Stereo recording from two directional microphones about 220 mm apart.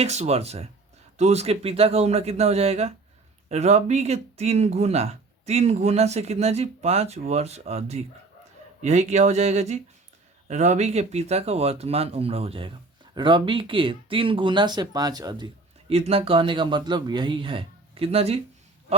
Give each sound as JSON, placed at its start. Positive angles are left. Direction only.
{"t": 0.0, "sound": "speech", "side_deg": -30}